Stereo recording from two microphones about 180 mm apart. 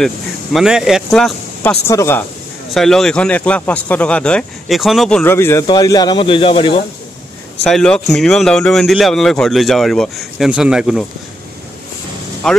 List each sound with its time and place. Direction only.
0.0 s speech: centre (ahead or behind)
2.7 s speech: centre (ahead or behind)
5.2 s speech: 15° left (ahead or behind); by 6.8 s 30° left (ahead or behind)
7.6 s speech: 5° left (ahead or behind)
12.4 s speech: 5° left (ahead or behind)